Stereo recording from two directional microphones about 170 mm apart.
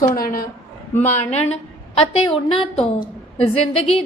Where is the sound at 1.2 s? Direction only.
40° left (ahead or behind).